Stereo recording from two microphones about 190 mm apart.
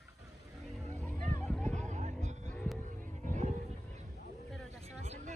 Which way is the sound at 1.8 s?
40° right (ahead or behind).